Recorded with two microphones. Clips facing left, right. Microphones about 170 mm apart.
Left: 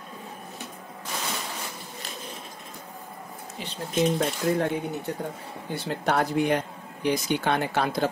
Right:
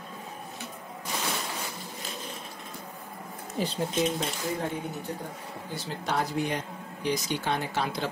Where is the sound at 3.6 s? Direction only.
45° right (ahead or behind).